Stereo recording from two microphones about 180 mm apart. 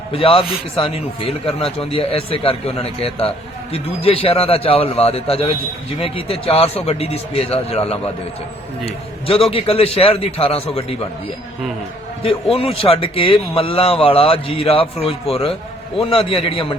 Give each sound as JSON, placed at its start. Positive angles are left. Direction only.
{"t": 0.1, "sound": "a man's voice", "side_deg": 30}
{"t": 9.2, "sound": "a man's voice", "side_deg": 30}
{"t": 12.2, "sound": "a man's voice", "side_deg": 30}